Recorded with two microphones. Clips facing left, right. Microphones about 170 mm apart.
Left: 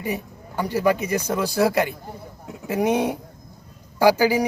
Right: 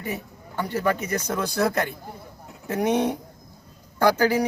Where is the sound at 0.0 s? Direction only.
15° left (ahead or behind).